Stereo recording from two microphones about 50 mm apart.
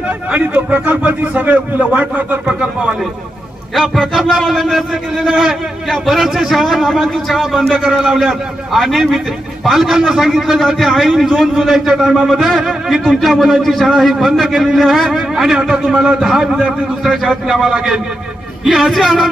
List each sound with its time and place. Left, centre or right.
0.3 s speech: right
2.4 s speech: centre
3.7 s a man's voice: centre